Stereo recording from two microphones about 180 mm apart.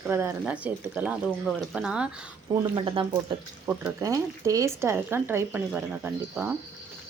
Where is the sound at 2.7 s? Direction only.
30° right (ahead or behind).